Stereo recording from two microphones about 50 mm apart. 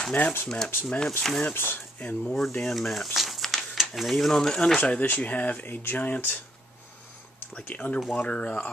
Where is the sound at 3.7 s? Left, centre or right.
Centre; by 6.3 s left.